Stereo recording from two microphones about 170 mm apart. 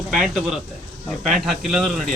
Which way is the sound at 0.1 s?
Centre (ahead or behind).